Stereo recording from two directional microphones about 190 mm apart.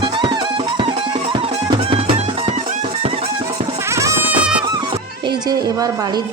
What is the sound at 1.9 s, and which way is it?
Music, 25° right (ahead or behind).